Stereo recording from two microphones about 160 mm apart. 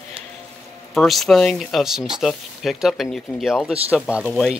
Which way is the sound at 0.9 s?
Centre (ahead or behind).